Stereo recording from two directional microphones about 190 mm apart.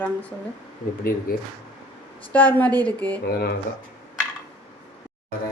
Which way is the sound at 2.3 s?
10° left (ahead or behind).